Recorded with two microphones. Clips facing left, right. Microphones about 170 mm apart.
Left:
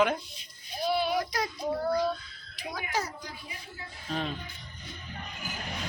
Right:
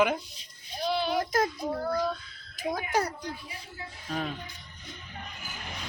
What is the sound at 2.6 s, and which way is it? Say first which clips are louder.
Speech: right 5 dB; 50° right (ahead or behind).